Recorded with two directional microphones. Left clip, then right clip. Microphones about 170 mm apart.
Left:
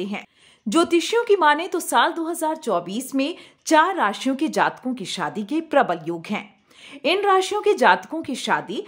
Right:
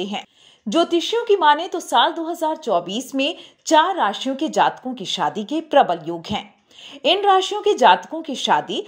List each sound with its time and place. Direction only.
0.7 s a woman's voice: 20° left (ahead or behind); by 8.8 s 5° left (ahead or behind)